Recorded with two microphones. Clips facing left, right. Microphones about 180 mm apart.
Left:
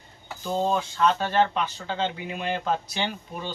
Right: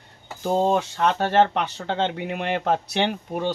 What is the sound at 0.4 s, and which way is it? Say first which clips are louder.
Speech: right 5 dB; 55° right (ahead or behind).